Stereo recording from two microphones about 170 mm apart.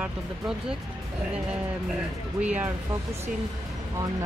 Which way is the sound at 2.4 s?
10° right (ahead or behind).